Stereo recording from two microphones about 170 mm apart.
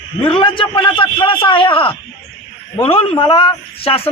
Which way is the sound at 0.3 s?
30° left (ahead or behind).